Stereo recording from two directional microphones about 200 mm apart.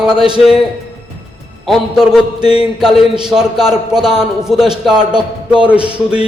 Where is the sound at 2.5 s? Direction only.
30° left (ahead or behind).